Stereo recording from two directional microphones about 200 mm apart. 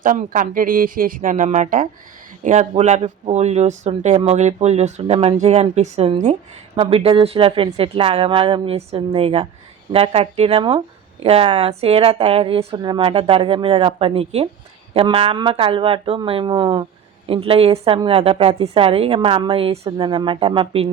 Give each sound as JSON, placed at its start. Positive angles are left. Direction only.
{"t": 0.0, "sound": "a woman's voice", "side_deg": -40}